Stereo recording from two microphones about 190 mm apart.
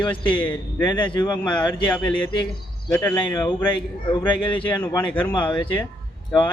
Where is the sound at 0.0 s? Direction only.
25° left (ahead or behind).